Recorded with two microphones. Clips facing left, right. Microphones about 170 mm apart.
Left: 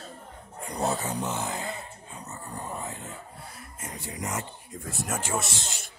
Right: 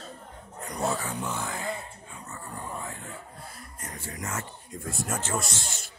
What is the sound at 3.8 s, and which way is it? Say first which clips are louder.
Speech: left 2 dB; 15° left (ahead or behind).